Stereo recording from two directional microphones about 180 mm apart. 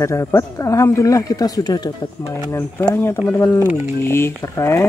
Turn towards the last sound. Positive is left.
turn(degrees=15)  # may be behind; listen again after turning